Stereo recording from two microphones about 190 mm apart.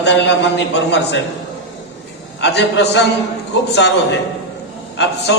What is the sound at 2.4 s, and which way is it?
Speech, 65° left (ahead or behind).